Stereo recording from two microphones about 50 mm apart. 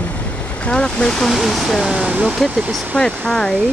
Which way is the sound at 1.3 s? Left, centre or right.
Centre.